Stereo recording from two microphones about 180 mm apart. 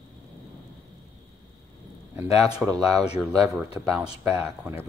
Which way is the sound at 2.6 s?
20° right (ahead or behind).